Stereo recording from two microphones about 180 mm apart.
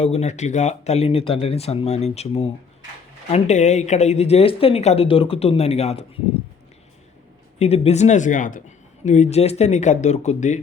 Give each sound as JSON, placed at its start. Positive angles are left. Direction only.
{"t": 0.0, "sound": "speech", "side_deg": 35}
{"t": 7.6, "sound": "speech", "side_deg": 35}